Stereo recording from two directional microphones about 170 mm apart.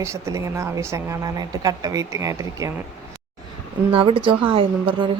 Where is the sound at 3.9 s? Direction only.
30° right (ahead or behind).